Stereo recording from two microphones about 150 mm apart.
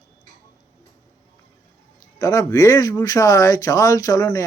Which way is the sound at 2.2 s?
20° left (ahead or behind).